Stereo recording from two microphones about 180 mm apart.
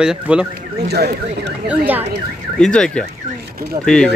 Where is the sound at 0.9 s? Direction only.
65° right (ahead or behind).